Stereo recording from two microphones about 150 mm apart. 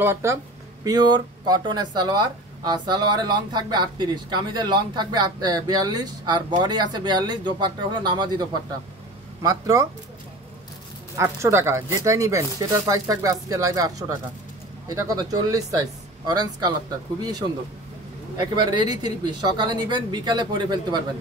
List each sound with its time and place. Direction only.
0.0 s speech: 15° right (ahead or behind)
0.8 s speech: 25° right (ahead or behind)
11.1 s speech: 20° right (ahead or behind)
18.6 s speech: 30° right (ahead or behind)